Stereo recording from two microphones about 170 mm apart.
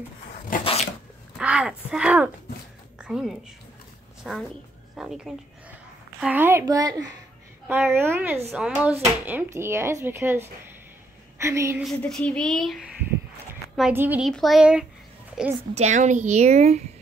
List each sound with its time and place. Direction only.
1.4 s a woman's voice: 5° right (ahead or behind); by 7.1 s 20° right (ahead or behind)
7.6 s speech: 10° right (ahead or behind)
12.0 s speech: 5° left (ahead or behind)
15.7 s speech: 45° right (ahead or behind)